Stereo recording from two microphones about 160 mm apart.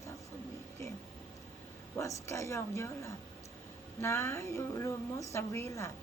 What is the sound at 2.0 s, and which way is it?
A woman's voice, 20° left (ahead or behind).